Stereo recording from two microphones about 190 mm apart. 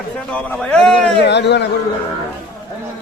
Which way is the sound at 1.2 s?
65° left (ahead or behind).